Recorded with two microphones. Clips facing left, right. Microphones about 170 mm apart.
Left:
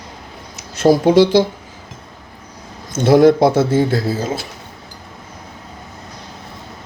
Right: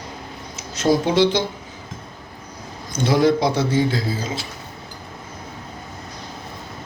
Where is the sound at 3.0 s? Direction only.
60° left (ahead or behind).